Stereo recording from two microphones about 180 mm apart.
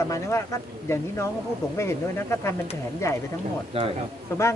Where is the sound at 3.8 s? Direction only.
30° right (ahead or behind).